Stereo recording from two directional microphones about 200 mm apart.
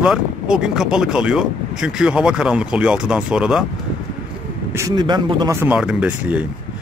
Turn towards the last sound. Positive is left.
turn(degrees=-5)  # may be behind; listen again after turning